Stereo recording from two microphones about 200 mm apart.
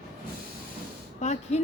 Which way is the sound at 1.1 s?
35° left (ahead or behind).